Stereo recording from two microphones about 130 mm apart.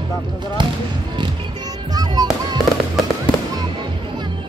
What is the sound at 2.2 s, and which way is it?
Fireworks, 30° right (ahead or behind).